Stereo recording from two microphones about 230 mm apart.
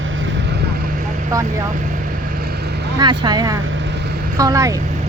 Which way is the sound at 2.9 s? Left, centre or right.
Centre.